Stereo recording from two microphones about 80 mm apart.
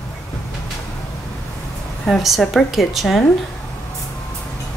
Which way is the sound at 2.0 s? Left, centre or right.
Centre.